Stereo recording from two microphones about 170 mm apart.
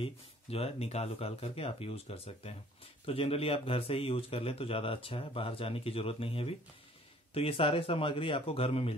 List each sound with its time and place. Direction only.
0.0 s speech: 35° left (ahead or behind)